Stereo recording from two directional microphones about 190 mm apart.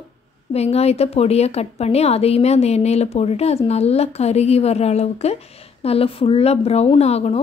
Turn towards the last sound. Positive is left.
turn(degrees=35)  # may be behind; listen again after turning